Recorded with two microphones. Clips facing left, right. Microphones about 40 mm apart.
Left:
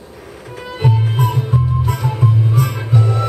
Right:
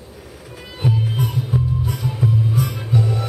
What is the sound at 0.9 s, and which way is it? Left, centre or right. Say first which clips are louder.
Music: left 4 dB; left.